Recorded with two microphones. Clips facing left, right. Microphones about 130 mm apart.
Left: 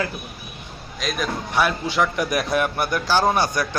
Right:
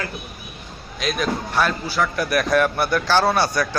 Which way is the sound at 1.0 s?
Centre (ahead or behind).